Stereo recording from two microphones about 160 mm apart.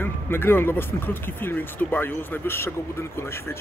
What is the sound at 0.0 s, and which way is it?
Speech, 15° left (ahead or behind).